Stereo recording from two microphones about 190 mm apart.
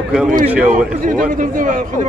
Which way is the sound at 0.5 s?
5° right (ahead or behind).